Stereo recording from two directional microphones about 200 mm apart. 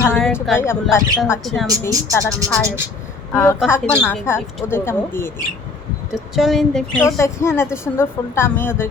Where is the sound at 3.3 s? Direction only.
10° left (ahead or behind).